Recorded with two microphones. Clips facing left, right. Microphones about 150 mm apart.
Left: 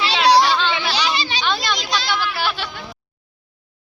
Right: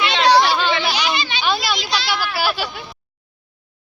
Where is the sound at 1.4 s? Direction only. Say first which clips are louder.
Right 1 dB; 10° right (ahead or behind).